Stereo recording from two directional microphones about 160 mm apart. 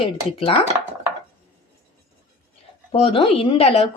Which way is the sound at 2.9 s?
35° left (ahead or behind).